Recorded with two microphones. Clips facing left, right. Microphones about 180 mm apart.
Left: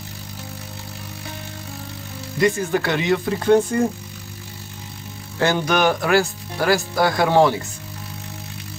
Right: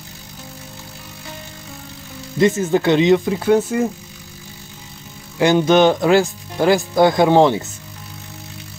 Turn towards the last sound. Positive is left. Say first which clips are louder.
# right 3 dB
turn(degrees=-20)  # may be behind; listen again after turning